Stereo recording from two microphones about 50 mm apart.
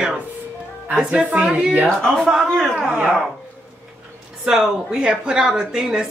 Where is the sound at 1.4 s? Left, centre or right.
Centre.